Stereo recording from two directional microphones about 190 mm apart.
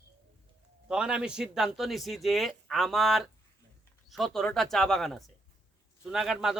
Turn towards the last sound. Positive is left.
turn(degrees=-5)  # may be behind; listen again after turning